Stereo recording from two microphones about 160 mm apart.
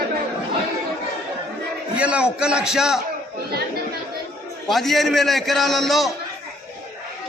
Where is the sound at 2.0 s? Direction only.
5° right (ahead or behind).